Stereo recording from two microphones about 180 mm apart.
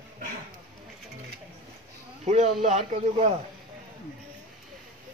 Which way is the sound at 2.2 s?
40° right (ahead or behind).